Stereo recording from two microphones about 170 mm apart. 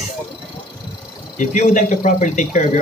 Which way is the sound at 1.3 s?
45° left (ahead or behind).